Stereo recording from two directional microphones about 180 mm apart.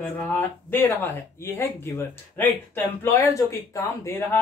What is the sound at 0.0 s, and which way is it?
Speech, 10° left (ahead or behind).